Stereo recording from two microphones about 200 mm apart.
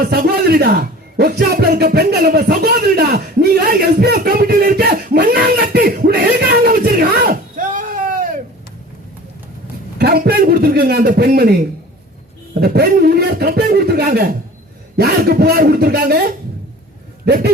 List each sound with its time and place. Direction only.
0.1 s speech: 50° right (ahead or behind)
10.0 s a man's voice: 50° right (ahead or behind)